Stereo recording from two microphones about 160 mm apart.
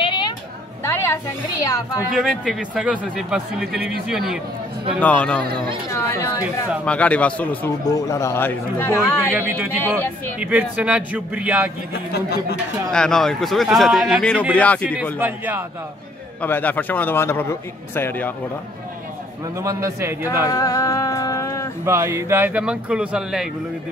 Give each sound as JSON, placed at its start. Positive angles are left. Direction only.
{"t": 0.0, "sound": "a sound", "side_deg": 30}
{"t": 0.8, "sound": "a woman's voice", "side_deg": 15}
{"t": 2.1, "sound": "speech", "side_deg": 0}
{"t": 5.0, "sound": "a man's voice", "side_deg": 10}
{"t": 7.9, "sound": "a man's voice", "side_deg": 20}
{"t": 9.2, "sound": "speech", "side_deg": -10}
{"t": 11.9, "sound": "a man's voice", "side_deg": 85}
{"t": 12.9, "sound": "a man's voice", "side_deg": 5}
{"t": 15.1, "sound": "speech", "side_deg": -10}
{"t": 16.3, "sound": "a man's voice", "side_deg": 10}
{"t": 19.5, "sound": "a man's voice", "side_deg": -20}
{"t": 20.4, "sound": "a sound", "side_deg": 20}
{"t": 21.8, "sound": "speech", "side_deg": -15}